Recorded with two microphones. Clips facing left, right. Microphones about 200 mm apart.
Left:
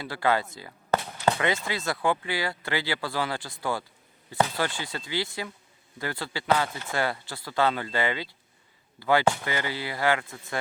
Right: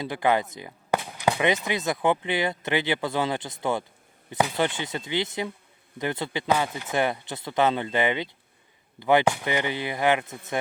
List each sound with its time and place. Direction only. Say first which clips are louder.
0.0 s speech: right 2 dB; 20° right (ahead or behind)